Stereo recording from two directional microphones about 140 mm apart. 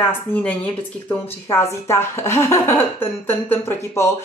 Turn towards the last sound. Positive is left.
turn(degrees=20)  # may be behind; listen again after turning